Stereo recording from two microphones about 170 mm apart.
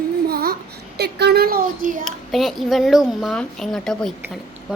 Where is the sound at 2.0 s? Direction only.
Centre (ahead or behind).